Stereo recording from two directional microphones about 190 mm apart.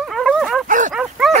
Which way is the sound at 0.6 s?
45° right (ahead or behind).